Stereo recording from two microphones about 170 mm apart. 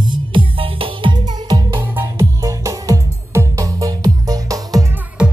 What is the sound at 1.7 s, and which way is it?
Music, 15° right (ahead or behind).